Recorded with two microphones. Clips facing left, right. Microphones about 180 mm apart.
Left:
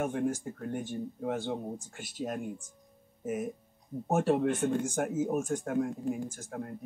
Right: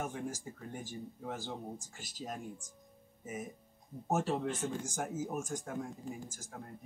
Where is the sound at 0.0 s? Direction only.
60° left (ahead or behind).